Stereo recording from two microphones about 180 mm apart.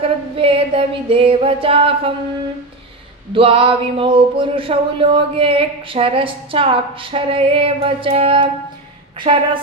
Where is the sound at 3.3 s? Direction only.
30° right (ahead or behind).